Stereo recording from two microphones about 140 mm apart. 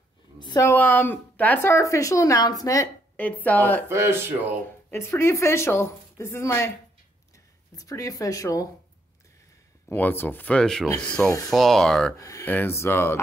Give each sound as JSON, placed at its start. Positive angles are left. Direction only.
{"t": 0.6, "sound": "speech", "side_deg": 15}
{"t": 3.2, "sound": "speech", "side_deg": 10}
{"t": 3.9, "sound": "speech", "side_deg": -20}
{"t": 4.9, "sound": "speech", "side_deg": 20}
{"t": 7.7, "sound": "speech", "side_deg": 25}
{"t": 9.8, "sound": "speech", "side_deg": 15}
{"t": 12.2, "sound": "speech", "side_deg": 20}